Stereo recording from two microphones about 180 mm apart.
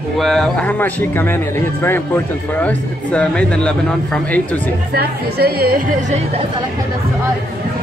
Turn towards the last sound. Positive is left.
turn(degrees=-55)  # may be behind; listen again after turning